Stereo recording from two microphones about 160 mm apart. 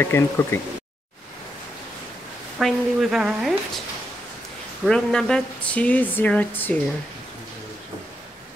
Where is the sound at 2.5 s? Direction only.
Centre (ahead or behind).